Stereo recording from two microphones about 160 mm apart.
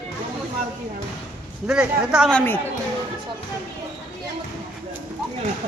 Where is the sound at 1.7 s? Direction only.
5° right (ahead or behind).